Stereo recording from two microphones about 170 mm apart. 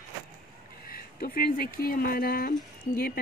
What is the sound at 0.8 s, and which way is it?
Speech, 60° left (ahead or behind).